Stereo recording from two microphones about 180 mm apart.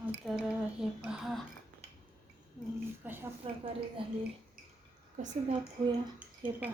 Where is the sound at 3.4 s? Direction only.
30° right (ahead or behind).